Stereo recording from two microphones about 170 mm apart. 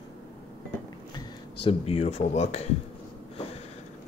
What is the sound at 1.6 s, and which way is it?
Speech, 35° left (ahead or behind).